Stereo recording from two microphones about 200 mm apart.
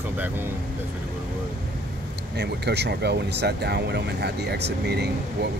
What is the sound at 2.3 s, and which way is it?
Speech, 55° right (ahead or behind).